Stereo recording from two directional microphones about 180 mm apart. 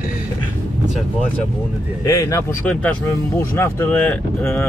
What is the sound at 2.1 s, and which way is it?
Cattle, 20° left (ahead or behind).